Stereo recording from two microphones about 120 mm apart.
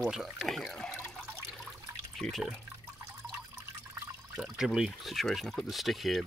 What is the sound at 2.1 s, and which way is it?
Speech, centre (ahead or behind).